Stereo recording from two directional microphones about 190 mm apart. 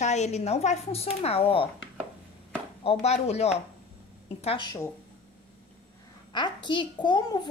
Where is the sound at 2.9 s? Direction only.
35° left (ahead or behind).